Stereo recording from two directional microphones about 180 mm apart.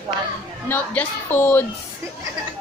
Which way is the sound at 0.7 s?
10° left (ahead or behind).